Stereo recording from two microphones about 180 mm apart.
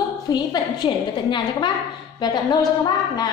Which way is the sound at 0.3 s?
25° left (ahead or behind).